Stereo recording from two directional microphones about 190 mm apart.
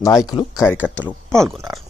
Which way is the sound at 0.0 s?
20° left (ahead or behind).